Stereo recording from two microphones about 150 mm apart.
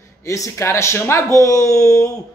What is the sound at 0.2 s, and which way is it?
A man's voice, 20° left (ahead or behind).